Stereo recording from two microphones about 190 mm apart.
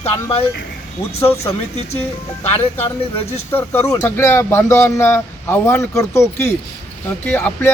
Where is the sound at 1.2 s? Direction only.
15° left (ahead or behind).